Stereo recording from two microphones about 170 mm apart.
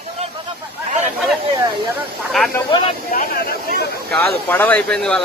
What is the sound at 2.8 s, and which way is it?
Speech, 50° left (ahead or behind).